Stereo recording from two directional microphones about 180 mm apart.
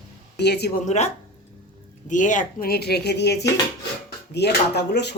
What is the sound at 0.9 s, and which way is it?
Speech, 40° left (ahead or behind).